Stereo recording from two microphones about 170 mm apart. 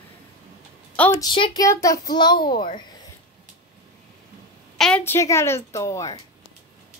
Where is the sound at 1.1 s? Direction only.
25° left (ahead or behind).